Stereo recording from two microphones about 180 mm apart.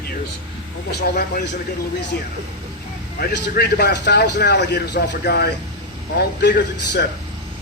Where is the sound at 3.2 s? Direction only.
65° left (ahead or behind).